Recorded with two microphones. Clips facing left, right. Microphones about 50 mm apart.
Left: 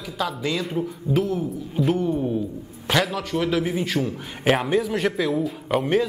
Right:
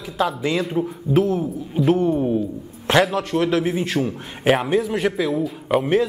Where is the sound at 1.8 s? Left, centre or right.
Centre.